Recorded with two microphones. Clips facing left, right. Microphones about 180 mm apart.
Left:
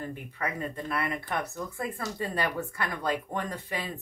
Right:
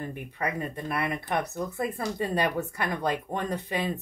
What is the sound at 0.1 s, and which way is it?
Speech, 15° right (ahead or behind).